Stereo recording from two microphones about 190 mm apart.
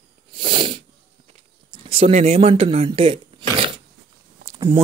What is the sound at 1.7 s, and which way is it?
Speech, 30° right (ahead or behind).